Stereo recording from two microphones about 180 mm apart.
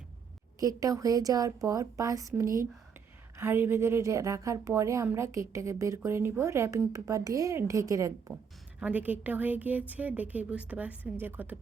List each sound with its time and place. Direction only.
0.6 s a woman's voice: 20° right (ahead or behind)